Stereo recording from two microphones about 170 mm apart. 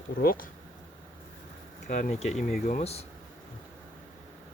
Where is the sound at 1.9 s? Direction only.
50° left (ahead or behind).